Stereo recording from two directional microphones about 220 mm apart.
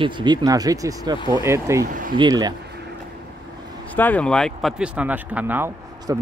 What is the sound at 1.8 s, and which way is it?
Speech, 40° right (ahead or behind).